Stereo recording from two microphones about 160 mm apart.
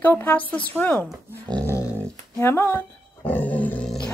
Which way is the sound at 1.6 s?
15° left (ahead or behind).